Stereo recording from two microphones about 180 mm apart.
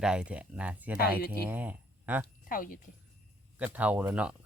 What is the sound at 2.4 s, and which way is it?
Speech, 50° left (ahead or behind).